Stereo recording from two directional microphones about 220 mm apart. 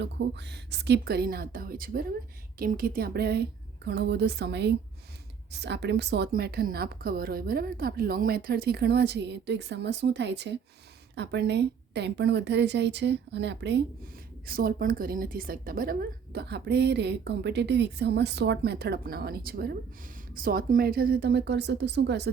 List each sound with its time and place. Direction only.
0.0 s a woman's voice: 50° right (ahead or behind)